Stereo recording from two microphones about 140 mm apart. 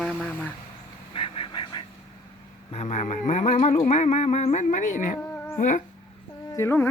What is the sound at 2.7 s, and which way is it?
Speech, 55° left (ahead or behind).